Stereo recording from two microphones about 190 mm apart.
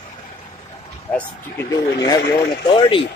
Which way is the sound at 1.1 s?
15° left (ahead or behind).